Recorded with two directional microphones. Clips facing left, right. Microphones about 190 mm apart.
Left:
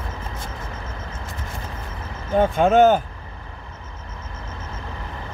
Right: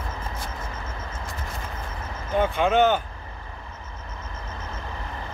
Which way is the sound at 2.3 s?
40° left (ahead or behind).